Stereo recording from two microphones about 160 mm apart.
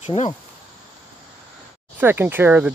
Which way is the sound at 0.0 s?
40° left (ahead or behind).